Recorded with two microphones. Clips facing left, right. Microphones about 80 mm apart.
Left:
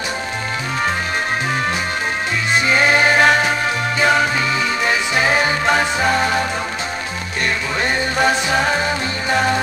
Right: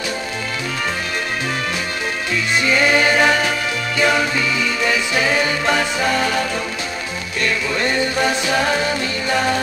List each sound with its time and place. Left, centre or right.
2.6 s music: left
7.4 s music: left